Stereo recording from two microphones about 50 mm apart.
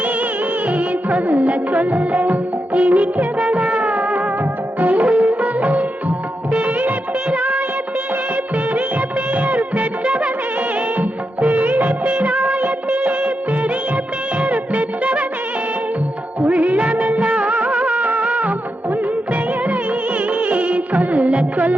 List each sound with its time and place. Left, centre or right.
0.7 s music of bollywood: right
4.8 s music: right
8.5 s music of bollywood: right
16.4 s music of bollywood: right